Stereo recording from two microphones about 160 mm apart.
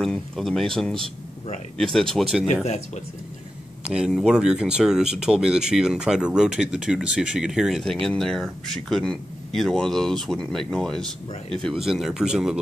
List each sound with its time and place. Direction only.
0.0 s speech: centre (ahead or behind)
2.6 s speech: 45° left (ahead or behind)
3.8 s speech: 5° right (ahead or behind)